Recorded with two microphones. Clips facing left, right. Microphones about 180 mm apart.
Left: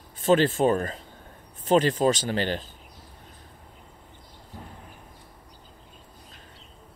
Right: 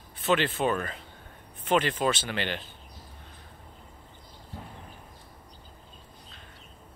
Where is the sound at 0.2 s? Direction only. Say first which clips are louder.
Left 6 dB; 45° left (ahead or behind).